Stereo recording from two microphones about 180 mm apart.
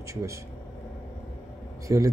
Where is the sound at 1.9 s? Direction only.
15° right (ahead or behind).